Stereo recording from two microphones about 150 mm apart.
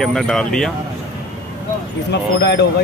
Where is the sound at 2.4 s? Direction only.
90° left.